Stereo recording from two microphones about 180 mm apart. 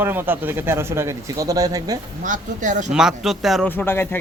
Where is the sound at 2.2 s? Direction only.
45° right (ahead or behind).